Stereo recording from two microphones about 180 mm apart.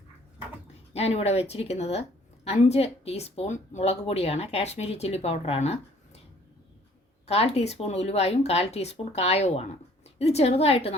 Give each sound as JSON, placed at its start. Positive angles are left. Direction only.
{"t": 0.9, "sound": "a woman's voice", "side_deg": 35}
{"t": 7.3, "sound": "a woman's voice", "side_deg": 35}